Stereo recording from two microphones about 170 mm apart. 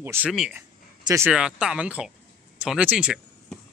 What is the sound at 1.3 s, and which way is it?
Speech, 5° right (ahead or behind).